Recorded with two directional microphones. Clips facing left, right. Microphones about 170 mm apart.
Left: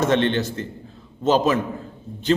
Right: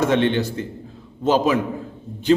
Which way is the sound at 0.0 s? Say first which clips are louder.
Right 1 dB; 10° right (ahead or behind).